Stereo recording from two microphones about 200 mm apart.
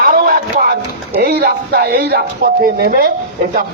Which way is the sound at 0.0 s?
45° right (ahead or behind).